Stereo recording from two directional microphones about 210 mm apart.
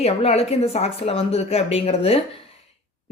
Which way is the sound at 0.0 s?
30° left (ahead or behind).